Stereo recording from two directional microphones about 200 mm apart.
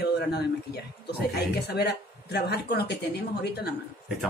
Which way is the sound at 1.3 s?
55° left (ahead or behind).